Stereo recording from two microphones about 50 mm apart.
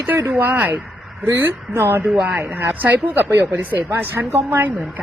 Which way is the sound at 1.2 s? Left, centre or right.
Right.